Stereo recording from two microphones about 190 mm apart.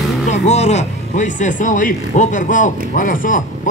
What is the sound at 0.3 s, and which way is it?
Speech, 35° left (ahead or behind).